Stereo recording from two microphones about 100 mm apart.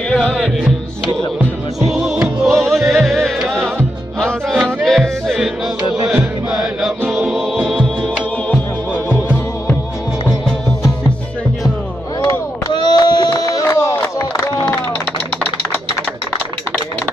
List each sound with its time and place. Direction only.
0.1 s music: 5° left (ahead or behind)
1.9 s music: 5° right (ahead or behind)
6.1 s chant: 5° right (ahead or behind)
7.1 s music: centre (ahead or behind)
9.1 s music: 20° left (ahead or behind)
12.2 s chop: 45° left (ahead or behind)
13.3 s a sound: 35° left (ahead or behind)